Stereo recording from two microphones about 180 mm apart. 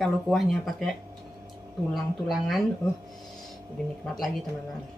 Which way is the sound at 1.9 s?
Centre (ahead or behind).